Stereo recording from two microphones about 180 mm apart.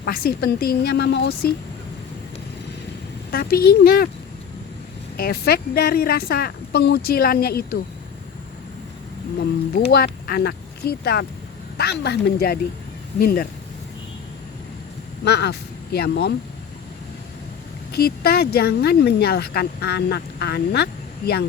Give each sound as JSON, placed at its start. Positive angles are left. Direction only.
{"t": 0.0, "sound": "speech", "side_deg": 55}
{"t": 3.3, "sound": "speech", "side_deg": 55}
{"t": 5.1, "sound": "speech", "side_deg": 60}
{"t": 9.9, "sound": "speech", "side_deg": 55}
{"t": 15.2, "sound": "speech", "side_deg": 65}
{"t": 17.9, "sound": "speech", "side_deg": 60}